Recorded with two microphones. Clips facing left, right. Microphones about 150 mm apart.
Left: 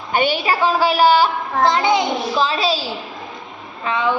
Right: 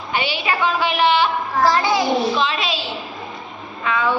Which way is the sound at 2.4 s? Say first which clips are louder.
Left 3 dB; 35° left (ahead or behind).